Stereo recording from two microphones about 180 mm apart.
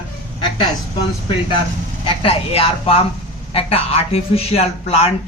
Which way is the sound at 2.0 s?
30° left (ahead or behind).